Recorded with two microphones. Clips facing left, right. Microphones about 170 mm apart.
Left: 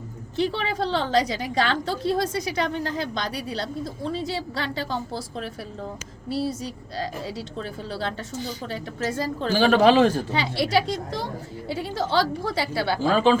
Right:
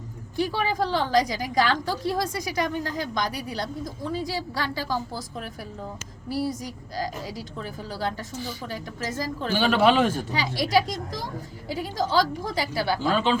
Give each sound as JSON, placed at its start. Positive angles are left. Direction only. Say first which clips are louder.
{"t": 0.3, "sound": "a woman's voice", "louder": "even", "side_deg": 25}